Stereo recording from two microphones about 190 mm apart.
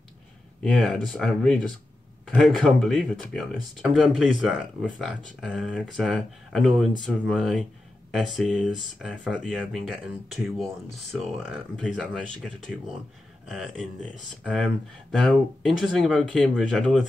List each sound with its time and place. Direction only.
0.6 s speech: 5° left (ahead or behind)